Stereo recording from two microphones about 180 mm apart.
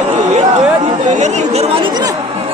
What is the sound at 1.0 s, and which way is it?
Speech, 40° right (ahead or behind).